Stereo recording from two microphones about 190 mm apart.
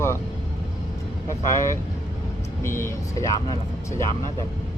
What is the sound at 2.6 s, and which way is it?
Speech, 15° left (ahead or behind).